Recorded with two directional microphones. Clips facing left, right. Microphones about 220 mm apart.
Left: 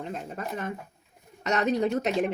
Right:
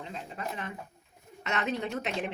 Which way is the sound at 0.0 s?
45° left (ahead or behind).